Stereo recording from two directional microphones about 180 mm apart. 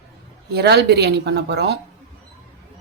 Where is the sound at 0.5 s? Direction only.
65° right (ahead or behind).